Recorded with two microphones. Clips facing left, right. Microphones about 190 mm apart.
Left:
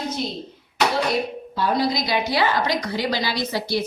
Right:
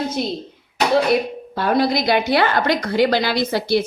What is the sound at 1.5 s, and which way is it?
A woman's voice, 60° right (ahead or behind).